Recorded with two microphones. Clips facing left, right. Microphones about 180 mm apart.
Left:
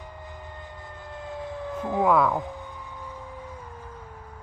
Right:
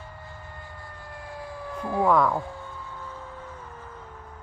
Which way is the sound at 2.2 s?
15° left (ahead or behind).